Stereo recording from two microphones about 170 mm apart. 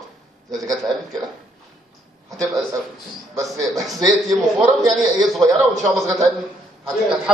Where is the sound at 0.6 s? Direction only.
20° right (ahead or behind).